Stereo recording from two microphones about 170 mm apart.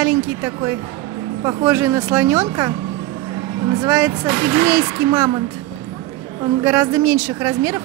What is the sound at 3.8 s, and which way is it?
Speech, 15° right (ahead or behind).